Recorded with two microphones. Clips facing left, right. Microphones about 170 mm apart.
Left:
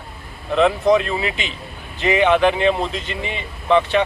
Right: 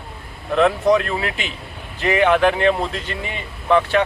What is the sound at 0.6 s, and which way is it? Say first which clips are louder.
Speech: even; 15° left (ahead or behind).